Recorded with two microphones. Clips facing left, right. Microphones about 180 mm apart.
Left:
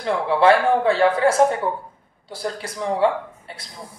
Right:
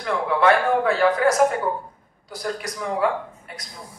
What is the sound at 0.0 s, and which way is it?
A man's voice, 30° left (ahead or behind).